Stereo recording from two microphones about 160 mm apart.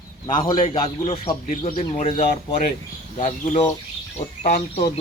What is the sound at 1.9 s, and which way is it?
Speech, 45° left (ahead or behind).